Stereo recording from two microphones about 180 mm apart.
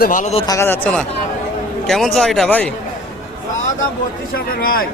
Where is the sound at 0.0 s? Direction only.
45° left (ahead or behind).